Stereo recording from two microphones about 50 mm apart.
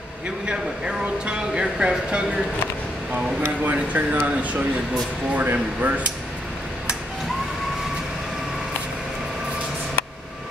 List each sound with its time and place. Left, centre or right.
0.5 s speech: centre
3.6 s speech: right